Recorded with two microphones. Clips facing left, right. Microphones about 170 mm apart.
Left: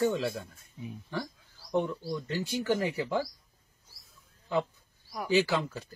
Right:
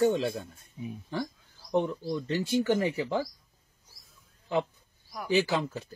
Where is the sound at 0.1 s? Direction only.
20° right (ahead or behind).